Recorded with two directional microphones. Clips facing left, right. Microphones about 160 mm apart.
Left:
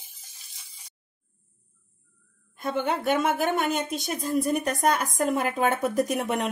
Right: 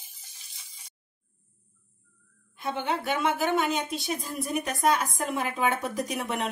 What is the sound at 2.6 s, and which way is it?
Speech, 45° left (ahead or behind).